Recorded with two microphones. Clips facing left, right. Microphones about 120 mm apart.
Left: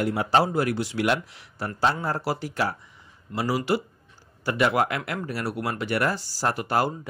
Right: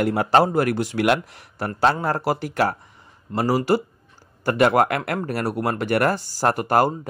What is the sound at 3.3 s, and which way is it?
Speech, 45° right (ahead or behind).